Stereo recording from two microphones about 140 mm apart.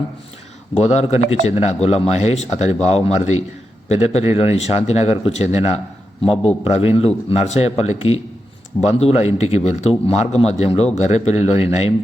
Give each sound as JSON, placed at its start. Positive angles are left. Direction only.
{"t": 0.8, "sound": "speech", "side_deg": 50}